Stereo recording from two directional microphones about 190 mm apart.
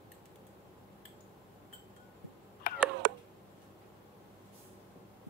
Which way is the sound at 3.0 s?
65° right (ahead or behind).